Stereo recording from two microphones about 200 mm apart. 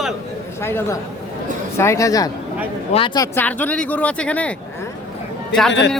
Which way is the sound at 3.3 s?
10° left (ahead or behind).